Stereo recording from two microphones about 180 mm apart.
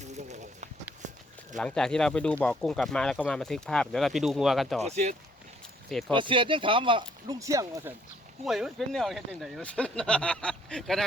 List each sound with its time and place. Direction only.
0.0 s a sound: 40° right (ahead or behind)
1.5 s speech: 5° left (ahead or behind)
4.8 s speech: 40° right (ahead or behind)
5.9 s speech: centre (ahead or behind)
6.1 s speech: 30° right (ahead or behind)
7.3 s speech: 20° right (ahead or behind)
8.4 s speech: centre (ahead or behind)